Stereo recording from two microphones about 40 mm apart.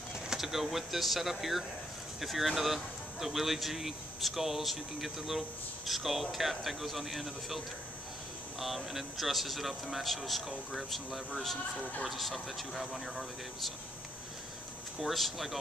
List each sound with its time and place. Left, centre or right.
0.1 s speech: centre
15.0 s speech: centre